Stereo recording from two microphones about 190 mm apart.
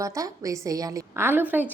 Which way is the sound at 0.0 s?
15° right (ahead or behind).